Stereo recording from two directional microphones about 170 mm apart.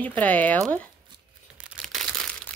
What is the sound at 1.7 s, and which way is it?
Crumpling, centre (ahead or behind).